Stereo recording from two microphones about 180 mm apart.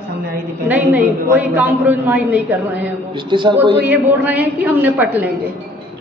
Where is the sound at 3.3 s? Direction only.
25° right (ahead or behind).